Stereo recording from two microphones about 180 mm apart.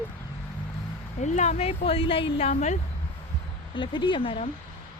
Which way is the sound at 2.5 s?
40° left (ahead or behind).